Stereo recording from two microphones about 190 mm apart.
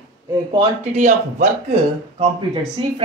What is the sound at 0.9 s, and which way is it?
Speech, 40° right (ahead or behind).